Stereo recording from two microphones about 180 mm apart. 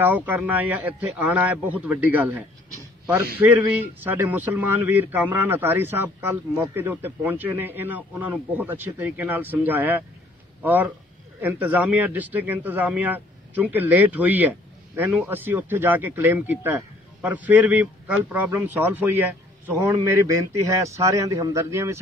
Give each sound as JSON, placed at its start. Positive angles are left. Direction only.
{"t": 0.0, "sound": "a man's voice", "side_deg": -10}